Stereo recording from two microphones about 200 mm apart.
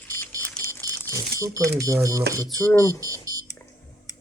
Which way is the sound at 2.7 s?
10° left (ahead or behind).